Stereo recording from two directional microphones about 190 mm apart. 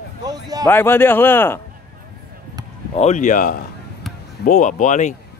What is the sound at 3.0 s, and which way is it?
Speech, 40° left (ahead or behind).